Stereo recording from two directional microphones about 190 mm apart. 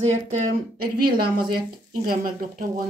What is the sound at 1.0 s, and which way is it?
Speech, 50° right (ahead or behind).